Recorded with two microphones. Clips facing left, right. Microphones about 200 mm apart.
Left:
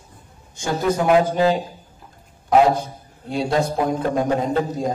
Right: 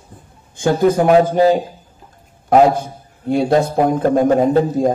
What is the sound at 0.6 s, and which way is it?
A man's voice, 55° right (ahead or behind).